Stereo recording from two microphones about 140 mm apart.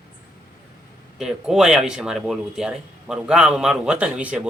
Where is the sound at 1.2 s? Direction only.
5° right (ahead or behind).